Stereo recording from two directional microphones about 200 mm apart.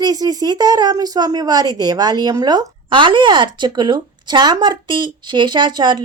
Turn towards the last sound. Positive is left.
turn(degrees=-20)  # may be behind; listen again after turning